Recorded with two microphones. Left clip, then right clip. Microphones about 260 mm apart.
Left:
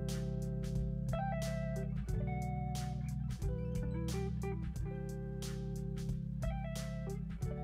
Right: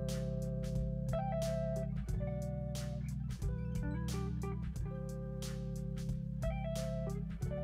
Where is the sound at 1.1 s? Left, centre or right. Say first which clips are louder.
Right 2 dB; centre.